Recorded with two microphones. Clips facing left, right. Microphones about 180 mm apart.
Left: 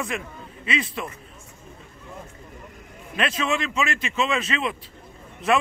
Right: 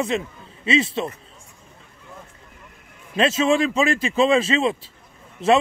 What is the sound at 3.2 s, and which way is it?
Speech, 25° right (ahead or behind).